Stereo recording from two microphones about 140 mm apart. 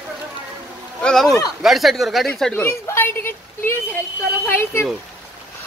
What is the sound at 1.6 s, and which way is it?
Speech, centre (ahead or behind).